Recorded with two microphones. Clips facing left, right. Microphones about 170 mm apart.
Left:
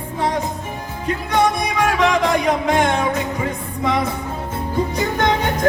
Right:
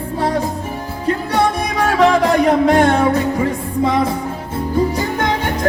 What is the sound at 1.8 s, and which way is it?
Music, 35° right (ahead or behind).